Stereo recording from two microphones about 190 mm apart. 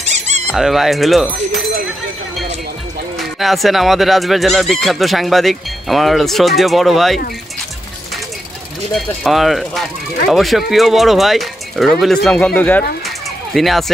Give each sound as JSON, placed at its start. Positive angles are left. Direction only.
{"t": 0.0, "sound": "squeak", "side_deg": -35}
{"t": 0.5, "sound": "speech", "side_deg": 0}
{"t": 3.2, "sound": "speech", "side_deg": 0}
{"t": 8.9, "sound": "speech", "side_deg": 0}